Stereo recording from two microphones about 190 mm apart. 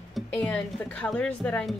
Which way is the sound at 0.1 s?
10° left (ahead or behind).